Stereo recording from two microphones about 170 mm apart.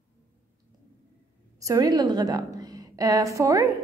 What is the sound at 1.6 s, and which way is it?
A woman's voice, 20° right (ahead or behind).